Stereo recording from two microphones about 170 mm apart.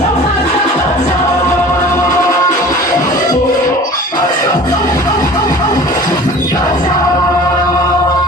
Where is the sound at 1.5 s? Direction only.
15° left (ahead or behind).